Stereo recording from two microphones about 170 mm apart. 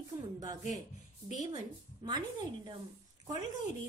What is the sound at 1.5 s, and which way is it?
A woman's voice, 30° right (ahead or behind).